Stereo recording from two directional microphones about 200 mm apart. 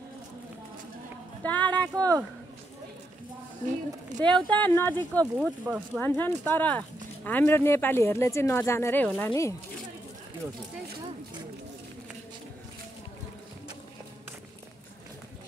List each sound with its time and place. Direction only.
1.4 s a sound: 5° left (ahead or behind)
2.0 s speech: 15° right (ahead or behind)
4.2 s speech: 5° left (ahead or behind)
5.4 s speech: 5° right (ahead or behind)
5.9 s speech: 10° left (ahead or behind)